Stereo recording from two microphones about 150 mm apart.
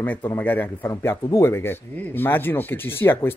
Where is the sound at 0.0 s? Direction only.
10° left (ahead or behind).